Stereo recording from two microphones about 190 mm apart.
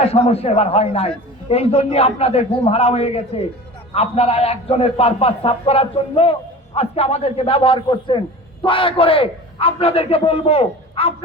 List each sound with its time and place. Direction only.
0.0 s a man's voice: 30° left (ahead or behind)